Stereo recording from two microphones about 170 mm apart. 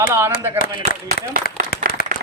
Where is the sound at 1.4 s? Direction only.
65° left (ahead or behind).